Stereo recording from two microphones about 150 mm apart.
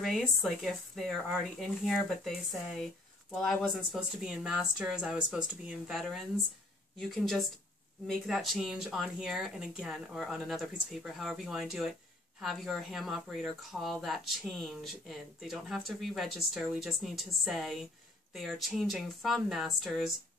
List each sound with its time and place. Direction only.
0.0 s speech: centre (ahead or behind)